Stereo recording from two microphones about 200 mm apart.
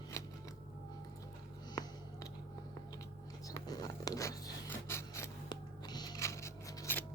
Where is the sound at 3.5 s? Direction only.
20° left (ahead or behind).